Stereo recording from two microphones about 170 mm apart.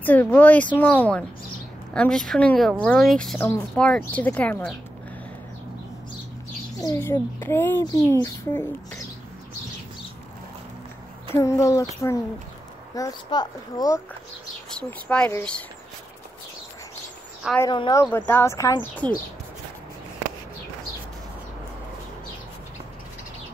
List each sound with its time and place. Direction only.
0.0 s a child's voice: 10° left (ahead or behind)
6.8 s a child's voice: 15° left (ahead or behind)
11.3 s a child's voice: 20° left (ahead or behind)
14.8 s a child's voice: 5° left (ahead or behind)
17.6 s speech: 25° left (ahead or behind)
18.0 s a child's voice: 10° left (ahead or behind)